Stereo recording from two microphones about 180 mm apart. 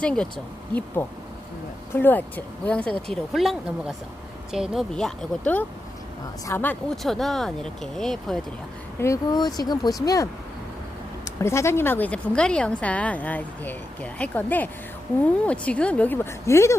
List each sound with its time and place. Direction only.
0.0 s a woman's voice: 5° left (ahead or behind)
9.0 s speech: 20° left (ahead or behind)
11.3 s a woman's voice: 15° left (ahead or behind)